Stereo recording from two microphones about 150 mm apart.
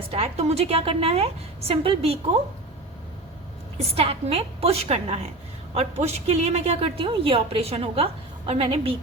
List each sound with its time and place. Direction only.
0.1 s a woman's voice: 45° right (ahead or behind)
3.8 s a woman's voice: 40° right (ahead or behind)